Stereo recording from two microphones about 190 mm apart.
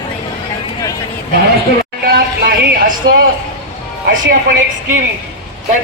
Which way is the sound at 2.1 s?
50° right (ahead or behind).